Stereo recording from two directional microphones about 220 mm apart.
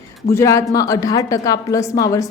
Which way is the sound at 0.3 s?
15° left (ahead or behind).